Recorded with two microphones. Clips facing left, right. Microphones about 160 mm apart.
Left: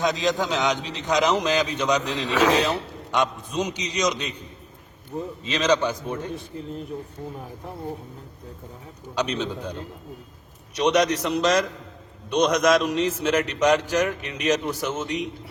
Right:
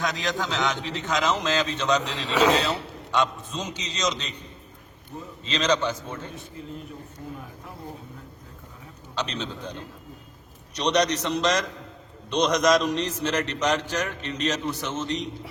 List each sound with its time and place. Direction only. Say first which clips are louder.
0.0 s a man's voice: left 5 dB; 20° left (ahead or behind)
5.5 s a man's voice: left 2 dB; 10° left (ahead or behind)
9.1 s a man's voice: left 5 dB; 10° left (ahead or behind)
10.8 s a man's voice: left 3 dB; 5° left (ahead or behind)